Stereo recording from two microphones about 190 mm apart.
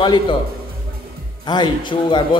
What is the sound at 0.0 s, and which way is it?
Speech, 25° left (ahead or behind).